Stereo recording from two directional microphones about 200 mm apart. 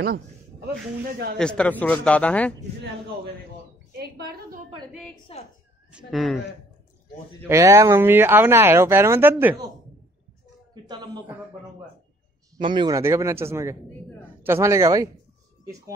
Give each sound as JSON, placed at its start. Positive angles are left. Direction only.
{"t": 1.4, "sound": "speech", "side_deg": 5}
{"t": 3.9, "sound": "a woman's voice", "side_deg": -50}
{"t": 5.3, "sound": "speech", "side_deg": 30}
{"t": 5.9, "sound": "speech", "side_deg": -5}
{"t": 7.4, "sound": "speech", "side_deg": -15}
{"t": 10.7, "sound": "speech", "side_deg": -20}
{"t": 12.5, "sound": "speech", "side_deg": -25}